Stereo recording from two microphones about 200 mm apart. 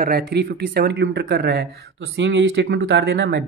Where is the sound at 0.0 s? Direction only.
50° right (ahead or behind).